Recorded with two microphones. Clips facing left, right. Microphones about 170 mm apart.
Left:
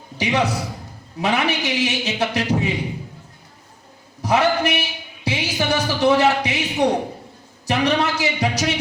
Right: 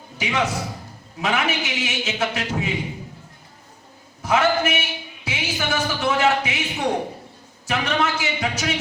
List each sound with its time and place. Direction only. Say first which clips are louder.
0.2 s a man's voice: left 3 dB; 35° left (ahead or behind)
4.2 s a sound: left 1 dB; 35° left (ahead or behind)
7.7 s a man's voice: left 3 dB; 35° left (ahead or behind)